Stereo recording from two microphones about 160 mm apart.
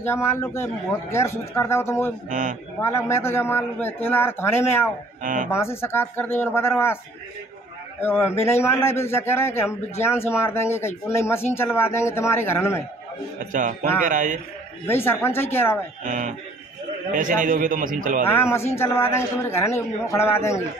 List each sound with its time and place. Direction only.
0.0 s a man's voice: 15° left (ahead or behind)
2.2 s a man's voice: 50° right (ahead or behind)
2.8 s a man's voice: 15° left (ahead or behind)
5.2 s a man's voice: 55° right (ahead or behind)
5.5 s a man's voice: 15° left (ahead or behind)
8.0 s a man's voice: 15° left (ahead or behind)
13.5 s a man's voice: 55° right (ahead or behind)
14.9 s a man's voice: 15° left (ahead or behind)
16.0 s a man's voice: 55° right (ahead or behind)
18.2 s a man's voice: 15° left (ahead or behind)